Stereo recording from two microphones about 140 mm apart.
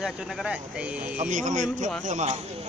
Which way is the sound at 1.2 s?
60° right (ahead or behind).